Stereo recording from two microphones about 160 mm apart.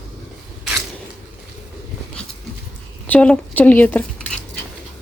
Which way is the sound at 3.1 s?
5° left (ahead or behind).